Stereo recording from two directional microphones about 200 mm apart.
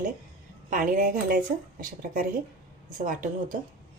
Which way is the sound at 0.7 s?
45° right (ahead or behind).